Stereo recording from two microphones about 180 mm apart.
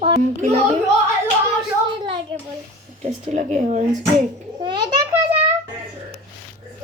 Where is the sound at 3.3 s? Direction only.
40° right (ahead or behind).